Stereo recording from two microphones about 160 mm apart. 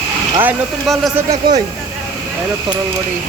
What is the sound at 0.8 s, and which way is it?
Speech, centre (ahead or behind).